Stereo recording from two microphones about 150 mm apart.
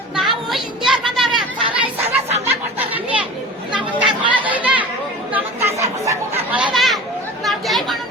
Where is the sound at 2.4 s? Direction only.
10° right (ahead or behind).